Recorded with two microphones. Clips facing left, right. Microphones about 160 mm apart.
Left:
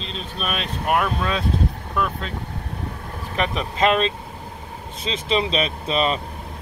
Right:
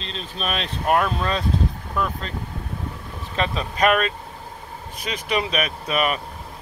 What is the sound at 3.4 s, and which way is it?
Speech, 20° left (ahead or behind).